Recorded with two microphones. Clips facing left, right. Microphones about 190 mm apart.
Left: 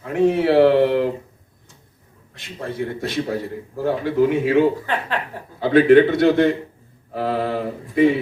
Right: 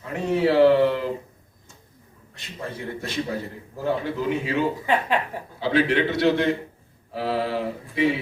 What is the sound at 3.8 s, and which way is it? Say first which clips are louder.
Speech: left 7 dB; 55° left (ahead or behind).